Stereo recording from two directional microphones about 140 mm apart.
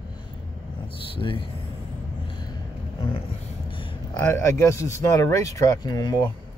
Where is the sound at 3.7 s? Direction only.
40° left (ahead or behind).